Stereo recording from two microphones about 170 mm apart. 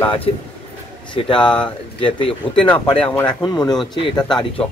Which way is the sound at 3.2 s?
25° left (ahead or behind).